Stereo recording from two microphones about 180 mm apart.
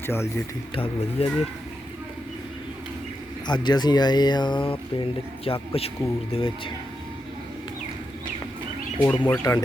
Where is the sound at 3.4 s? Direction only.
25° left (ahead or behind).